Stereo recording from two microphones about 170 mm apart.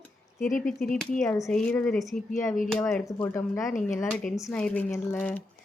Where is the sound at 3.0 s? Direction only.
15° left (ahead or behind).